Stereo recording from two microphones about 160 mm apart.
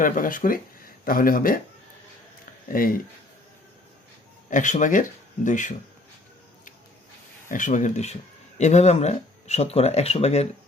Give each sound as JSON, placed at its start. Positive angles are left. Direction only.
{"t": 0.0, "sound": "speech", "side_deg": 60}
{"t": 2.6, "sound": "speech", "side_deg": 60}
{"t": 4.4, "sound": "speech", "side_deg": 50}
{"t": 7.4, "sound": "speech", "side_deg": 55}